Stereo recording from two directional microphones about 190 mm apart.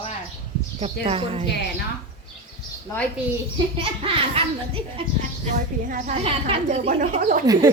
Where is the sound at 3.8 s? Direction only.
30° right (ahead or behind).